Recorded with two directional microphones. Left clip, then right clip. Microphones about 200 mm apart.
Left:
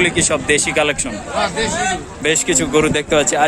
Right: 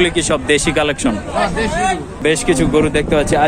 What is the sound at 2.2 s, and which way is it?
A man's voice, centre (ahead or behind).